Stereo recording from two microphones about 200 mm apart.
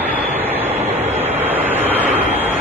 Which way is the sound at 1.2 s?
10° right (ahead or behind).